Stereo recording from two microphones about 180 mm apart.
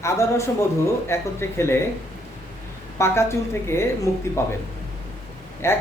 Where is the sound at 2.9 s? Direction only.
15° left (ahead or behind).